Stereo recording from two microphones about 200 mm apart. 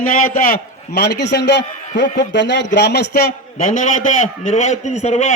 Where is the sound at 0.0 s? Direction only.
45° left (ahead or behind).